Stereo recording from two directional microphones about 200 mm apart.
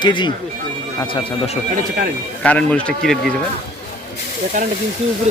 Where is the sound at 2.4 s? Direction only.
5° left (ahead or behind).